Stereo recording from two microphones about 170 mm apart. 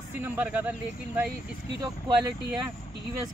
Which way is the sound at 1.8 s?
20° right (ahead or behind).